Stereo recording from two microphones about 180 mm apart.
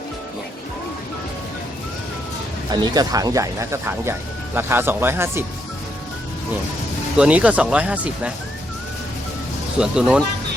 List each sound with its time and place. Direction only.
2.7 s speech: 20° right (ahead or behind)
7.2 s speech: 5° right (ahead or behind)
9.7 s speech: 5° right (ahead or behind)